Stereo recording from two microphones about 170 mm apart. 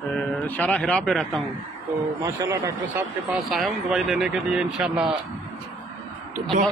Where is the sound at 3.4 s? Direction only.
Centre (ahead or behind).